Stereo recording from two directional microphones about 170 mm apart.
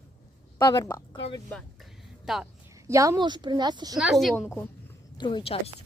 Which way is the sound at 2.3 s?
5° right (ahead or behind).